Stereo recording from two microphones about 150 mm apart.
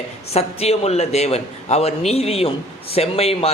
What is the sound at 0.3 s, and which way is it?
A man's voice, 45° left (ahead or behind).